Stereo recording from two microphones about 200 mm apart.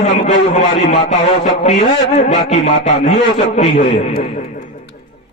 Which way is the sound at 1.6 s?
35° left (ahead or behind).